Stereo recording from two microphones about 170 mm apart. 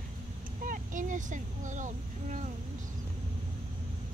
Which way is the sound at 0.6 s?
50° right (ahead or behind).